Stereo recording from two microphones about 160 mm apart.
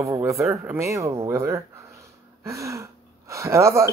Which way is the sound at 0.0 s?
20° right (ahead or behind).